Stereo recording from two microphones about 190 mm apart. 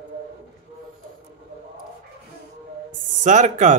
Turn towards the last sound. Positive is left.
turn(degrees=-40)  # may be behind; listen again after turning